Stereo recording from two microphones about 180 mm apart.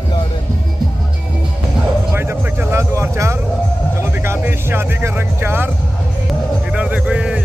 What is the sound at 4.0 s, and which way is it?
Speech, 15° right (ahead or behind).